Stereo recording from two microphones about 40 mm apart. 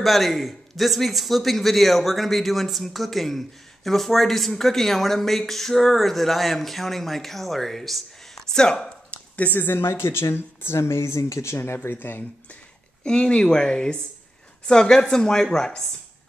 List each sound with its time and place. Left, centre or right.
0.0 s a man's voice: centre
8.5 s speech: centre
9.1 s a sound: left
9.5 s a woman's voice: left
9.8 s speech: left
13.0 s speech: left